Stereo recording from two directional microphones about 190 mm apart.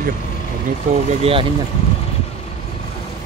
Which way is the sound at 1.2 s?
30° right (ahead or behind).